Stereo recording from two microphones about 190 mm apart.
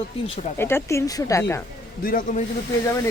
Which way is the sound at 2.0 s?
50° left (ahead or behind).